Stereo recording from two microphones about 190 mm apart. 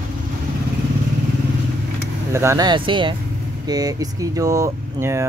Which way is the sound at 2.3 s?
15° right (ahead or behind).